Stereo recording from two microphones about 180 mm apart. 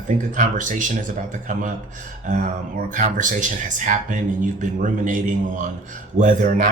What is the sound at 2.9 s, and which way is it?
Speech, 45° right (ahead or behind).